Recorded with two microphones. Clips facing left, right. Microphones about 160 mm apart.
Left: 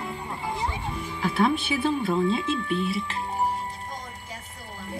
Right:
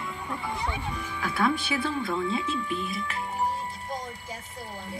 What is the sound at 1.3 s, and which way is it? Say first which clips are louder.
Speech: left 3 dB; 25° left (ahead or behind).